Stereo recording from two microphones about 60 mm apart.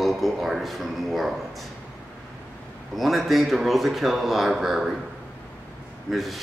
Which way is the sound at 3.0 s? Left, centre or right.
Centre.